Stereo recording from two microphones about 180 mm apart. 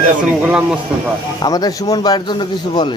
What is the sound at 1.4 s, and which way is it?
Speech, 20° left (ahead or behind).